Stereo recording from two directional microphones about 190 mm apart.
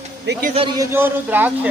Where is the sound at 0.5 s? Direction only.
25° right (ahead or behind).